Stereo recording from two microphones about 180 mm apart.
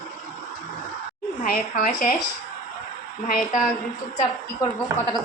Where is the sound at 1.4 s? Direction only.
50° left (ahead or behind).